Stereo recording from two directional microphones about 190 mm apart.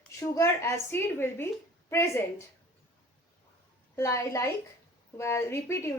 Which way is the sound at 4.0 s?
15° left (ahead or behind).